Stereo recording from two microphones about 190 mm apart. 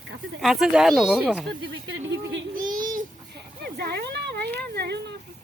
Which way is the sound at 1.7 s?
75° right (ahead or behind).